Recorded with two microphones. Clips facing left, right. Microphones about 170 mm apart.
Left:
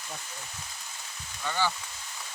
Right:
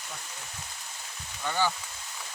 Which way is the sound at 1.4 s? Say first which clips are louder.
Right 1 dB; 15° right (ahead or behind).